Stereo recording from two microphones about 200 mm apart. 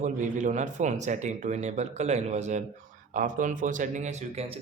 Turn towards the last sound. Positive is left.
turn(degrees=-30)  # may be behind; listen again after turning